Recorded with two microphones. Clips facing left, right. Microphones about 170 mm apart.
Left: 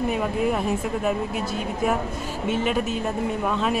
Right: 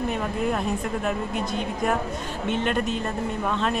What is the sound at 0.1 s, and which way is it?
Speech, 5° left (ahead or behind).